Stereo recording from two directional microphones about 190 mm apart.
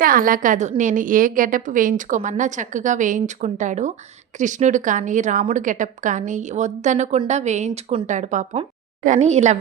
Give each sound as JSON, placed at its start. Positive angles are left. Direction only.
{"t": 0.0, "sound": "a woman's voice", "side_deg": -45}